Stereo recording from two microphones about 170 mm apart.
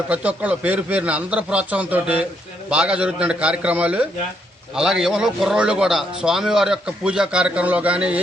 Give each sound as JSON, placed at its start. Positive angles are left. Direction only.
{"t": 0.1, "sound": "a man's voice", "side_deg": -10}